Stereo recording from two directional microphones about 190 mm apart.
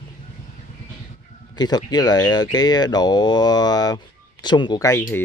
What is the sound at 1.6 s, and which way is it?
Speech, 20° left (ahead or behind).